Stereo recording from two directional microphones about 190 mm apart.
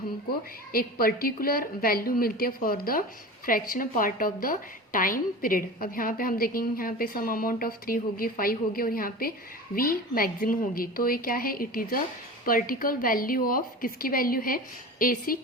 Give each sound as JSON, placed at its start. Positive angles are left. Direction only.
{"t": 0.3, "sound": "a woman's voice", "side_deg": 50}